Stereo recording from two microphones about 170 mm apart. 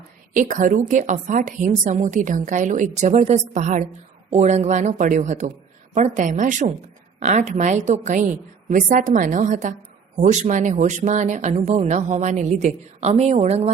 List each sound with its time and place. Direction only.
0.3 s speech: 50° right (ahead or behind)